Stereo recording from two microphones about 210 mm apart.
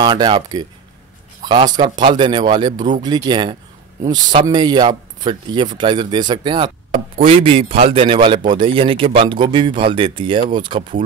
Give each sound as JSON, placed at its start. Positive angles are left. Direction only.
{"t": 0.0, "sound": "a man's voice", "side_deg": -20}